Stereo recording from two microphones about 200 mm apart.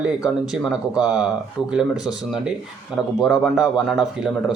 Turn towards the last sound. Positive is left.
turn(degrees=-5)  # may be behind; listen again after turning